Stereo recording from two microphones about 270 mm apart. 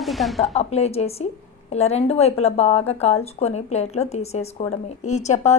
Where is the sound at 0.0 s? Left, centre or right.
Centre.